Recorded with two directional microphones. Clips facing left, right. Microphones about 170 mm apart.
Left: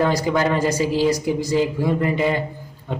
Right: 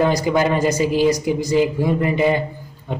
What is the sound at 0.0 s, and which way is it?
A man's voice, 15° right (ahead or behind).